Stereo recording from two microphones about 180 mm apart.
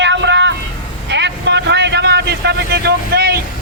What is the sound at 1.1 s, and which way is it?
Vehicle, 75° right (ahead or behind).